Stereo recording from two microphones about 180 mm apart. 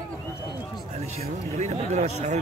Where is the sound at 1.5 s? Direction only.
40° right (ahead or behind).